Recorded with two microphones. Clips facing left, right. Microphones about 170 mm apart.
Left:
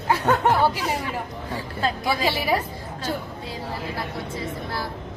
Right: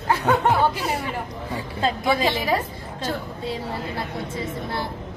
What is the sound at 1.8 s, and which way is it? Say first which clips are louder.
Speech: right 3 dB; 20° right (ahead or behind).